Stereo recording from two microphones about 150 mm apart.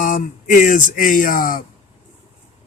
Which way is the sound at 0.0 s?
65° left (ahead or behind).